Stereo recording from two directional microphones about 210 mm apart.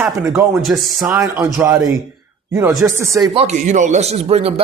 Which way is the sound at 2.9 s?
15° right (ahead or behind).